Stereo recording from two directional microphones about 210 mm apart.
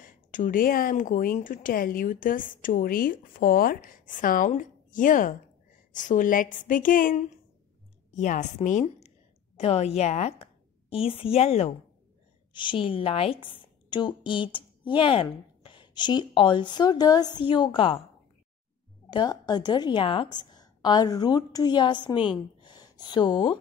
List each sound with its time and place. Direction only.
0.0 s a woman's voice: 40° left (ahead or behind); by 17.6 s 20° left (ahead or behind)
19.0 s a woman's voice: 20° left (ahead or behind)
22.6 s a sound: 20° left (ahead or behind)